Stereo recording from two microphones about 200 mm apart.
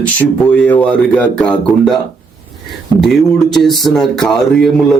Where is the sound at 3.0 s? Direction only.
Centre (ahead or behind).